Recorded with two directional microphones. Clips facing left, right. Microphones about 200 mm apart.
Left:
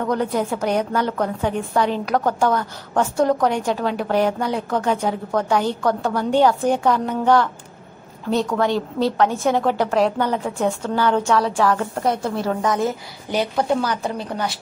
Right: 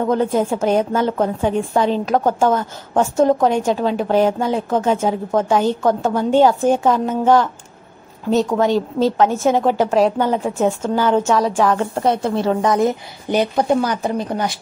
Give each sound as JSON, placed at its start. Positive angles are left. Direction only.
{"t": 0.0, "sound": "a woman's voice", "side_deg": -25}
{"t": 8.5, "sound": "a woman's voice", "side_deg": -20}
{"t": 13.3, "sound": "speech", "side_deg": -20}